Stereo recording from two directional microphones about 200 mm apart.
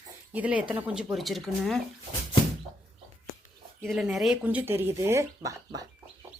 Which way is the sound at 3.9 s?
Centre (ahead or behind).